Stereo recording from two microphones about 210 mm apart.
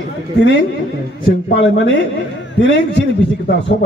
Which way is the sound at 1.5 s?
60° left (ahead or behind).